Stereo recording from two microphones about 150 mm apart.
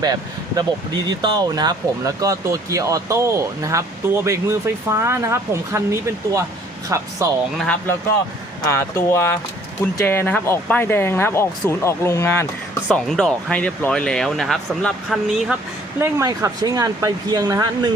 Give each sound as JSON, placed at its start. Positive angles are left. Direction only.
{"t": 0.0, "sound": "speech", "side_deg": -25}
{"t": 7.6, "sound": "speech", "side_deg": 10}
{"t": 12.9, "sound": "speech", "side_deg": 5}
{"t": 16.0, "sound": "speech", "side_deg": -20}